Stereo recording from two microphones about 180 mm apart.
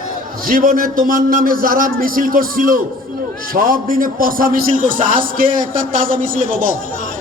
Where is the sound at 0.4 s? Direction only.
50° right (ahead or behind).